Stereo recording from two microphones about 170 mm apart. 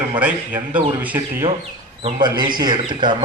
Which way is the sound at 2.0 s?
35° right (ahead or behind).